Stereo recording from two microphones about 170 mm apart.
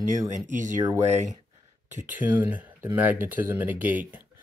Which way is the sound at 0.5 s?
50° right (ahead or behind).